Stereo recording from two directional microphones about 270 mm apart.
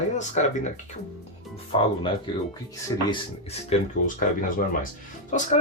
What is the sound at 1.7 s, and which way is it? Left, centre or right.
Speech, centre.